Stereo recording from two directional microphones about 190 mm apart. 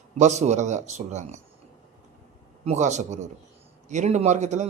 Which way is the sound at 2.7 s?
40° right (ahead or behind).